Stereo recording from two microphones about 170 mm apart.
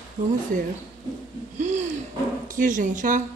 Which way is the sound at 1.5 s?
45° right (ahead or behind).